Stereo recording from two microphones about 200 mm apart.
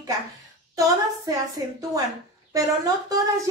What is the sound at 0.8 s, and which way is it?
A woman's voice, 15° right (ahead or behind).